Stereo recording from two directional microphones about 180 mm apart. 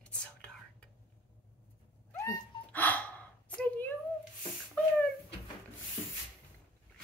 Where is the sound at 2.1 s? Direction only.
15° left (ahead or behind).